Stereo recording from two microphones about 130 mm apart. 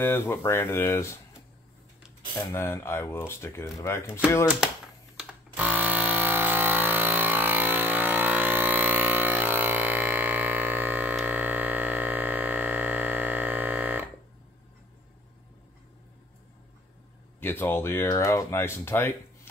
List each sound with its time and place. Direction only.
0.0 s speech: 20° left (ahead or behind)
2.3 s speech: 20° left (ahead or behind)
5.1 s a sound: 10° right (ahead or behind)
17.4 s speech: 15° left (ahead or behind)